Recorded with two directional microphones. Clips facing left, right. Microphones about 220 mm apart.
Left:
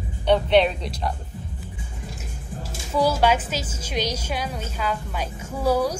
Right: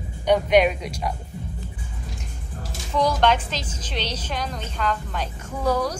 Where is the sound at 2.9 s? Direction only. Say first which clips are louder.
Left 1 dB; 5° left (ahead or behind).